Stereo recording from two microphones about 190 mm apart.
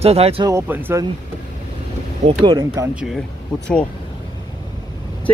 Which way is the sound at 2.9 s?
Centre (ahead or behind).